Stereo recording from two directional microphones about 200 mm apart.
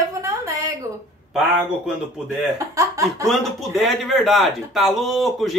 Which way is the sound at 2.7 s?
15° right (ahead or behind).